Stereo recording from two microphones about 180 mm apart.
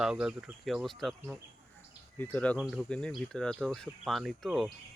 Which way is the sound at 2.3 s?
5° left (ahead or behind).